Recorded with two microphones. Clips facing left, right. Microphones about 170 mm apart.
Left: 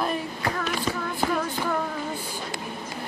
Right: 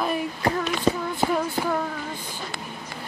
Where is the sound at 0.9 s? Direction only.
30° right (ahead or behind).